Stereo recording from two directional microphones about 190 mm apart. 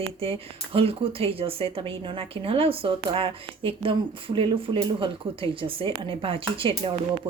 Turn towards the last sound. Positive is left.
turn(degrees=-30)  # may be behind; listen again after turning